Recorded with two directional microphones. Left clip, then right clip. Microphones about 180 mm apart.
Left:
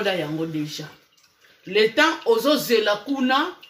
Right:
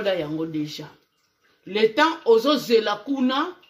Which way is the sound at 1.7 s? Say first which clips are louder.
Left 1 dB; 45° right (ahead or behind).